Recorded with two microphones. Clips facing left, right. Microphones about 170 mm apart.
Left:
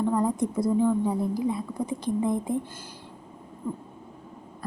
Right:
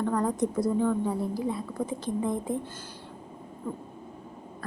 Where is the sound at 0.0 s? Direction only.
10° left (ahead or behind).